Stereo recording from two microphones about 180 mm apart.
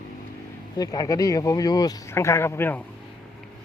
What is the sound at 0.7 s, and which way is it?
Speech, 20° left (ahead or behind).